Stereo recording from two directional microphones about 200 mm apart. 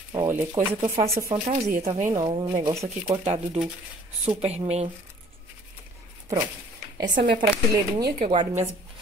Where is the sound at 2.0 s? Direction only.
20° right (ahead or behind).